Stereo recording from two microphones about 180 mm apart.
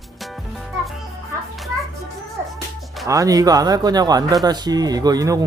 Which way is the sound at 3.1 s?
20° right (ahead or behind).